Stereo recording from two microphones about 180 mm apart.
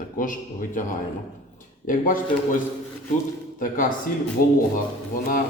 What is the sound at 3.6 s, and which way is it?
Speech, 50° left (ahead or behind).